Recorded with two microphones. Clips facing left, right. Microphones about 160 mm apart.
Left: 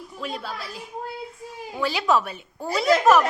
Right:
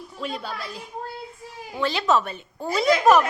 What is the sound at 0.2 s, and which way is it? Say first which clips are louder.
Speech: right 1 dB; centre (ahead or behind).